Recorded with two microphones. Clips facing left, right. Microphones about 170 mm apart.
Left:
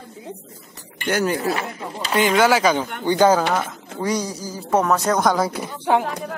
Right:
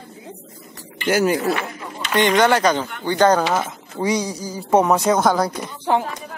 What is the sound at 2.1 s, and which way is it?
Speech, 5° left (ahead or behind).